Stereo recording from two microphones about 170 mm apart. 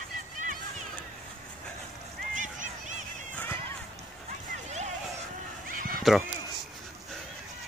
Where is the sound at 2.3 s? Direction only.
45° right (ahead or behind).